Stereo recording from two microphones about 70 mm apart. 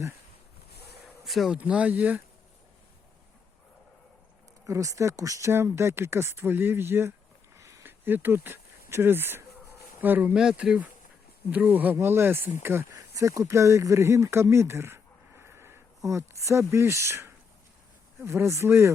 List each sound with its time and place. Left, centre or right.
1.0 s a sound: centre
1.5 s speech: centre
4.6 s speech: right
5.5 s speech: right
7.5 s a sound: right
7.9 s speech: right
10.3 s speech: centre
11.5 s speech: right
11.9 s speech: right
12.9 s speech: right
16.0 s speech: right